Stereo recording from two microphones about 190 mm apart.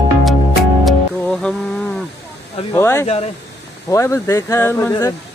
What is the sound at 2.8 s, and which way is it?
Speech, 15° left (ahead or behind).